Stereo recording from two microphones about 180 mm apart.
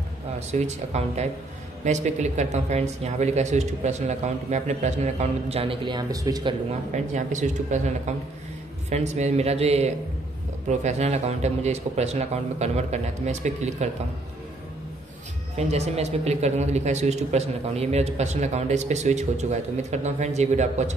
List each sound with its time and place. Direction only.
0.5 s speech: 40° right (ahead or behind); by 6.5 s 20° right (ahead or behind)
6.9 s speech: 40° right (ahead or behind)
8.9 s speech: 40° right (ahead or behind)
15.5 s speech: 40° right (ahead or behind)